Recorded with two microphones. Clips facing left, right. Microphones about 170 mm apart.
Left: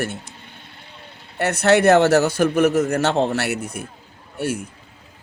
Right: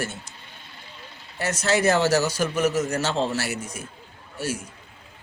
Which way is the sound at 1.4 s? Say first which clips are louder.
Left 7 dB; 60° left (ahead or behind).